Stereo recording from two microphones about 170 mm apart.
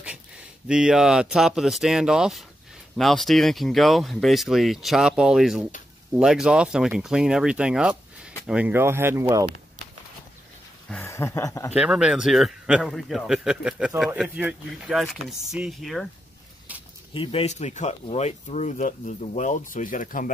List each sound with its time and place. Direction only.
0.0 s speech: 5° right (ahead or behind)
10.9 s speech: 15° left (ahead or behind)
11.7 s speech: 5° right (ahead or behind)
17.1 s speech: 30° left (ahead or behind); by 20.2 s 50° left (ahead or behind)